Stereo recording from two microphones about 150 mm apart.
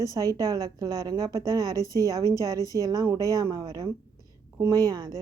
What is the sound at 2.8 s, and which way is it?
A woman's voice, 25° right (ahead or behind).